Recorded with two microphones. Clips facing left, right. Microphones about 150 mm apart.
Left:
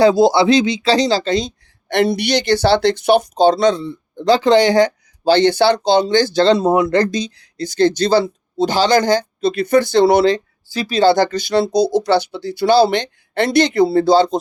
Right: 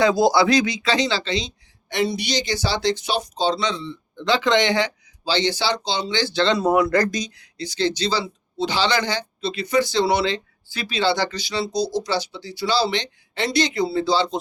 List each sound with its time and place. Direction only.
0.0 s speech: 25° left (ahead or behind)
7.6 s speech: 50° left (ahead or behind)